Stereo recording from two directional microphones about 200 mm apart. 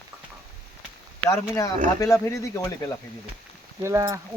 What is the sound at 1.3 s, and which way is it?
Speech, 15° left (ahead or behind).